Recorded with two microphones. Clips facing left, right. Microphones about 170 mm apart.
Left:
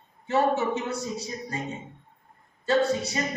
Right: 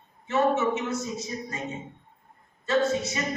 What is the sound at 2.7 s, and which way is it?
Speech, 35° left (ahead or behind).